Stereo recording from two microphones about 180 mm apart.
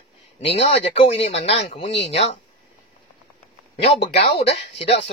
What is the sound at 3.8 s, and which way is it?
Speech, 30° left (ahead or behind).